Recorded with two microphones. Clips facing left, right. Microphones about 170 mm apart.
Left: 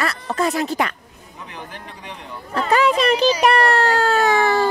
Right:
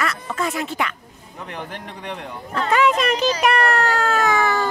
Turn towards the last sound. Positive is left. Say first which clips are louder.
# left 3 dB
turn(degrees=30)  # may be behind; listen again after turning